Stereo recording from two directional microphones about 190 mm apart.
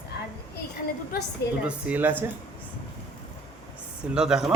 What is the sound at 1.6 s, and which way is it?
Speech, 5° right (ahead or behind).